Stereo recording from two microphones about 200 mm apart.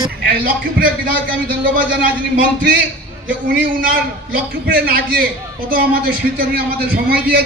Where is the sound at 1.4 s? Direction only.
45° right (ahead or behind).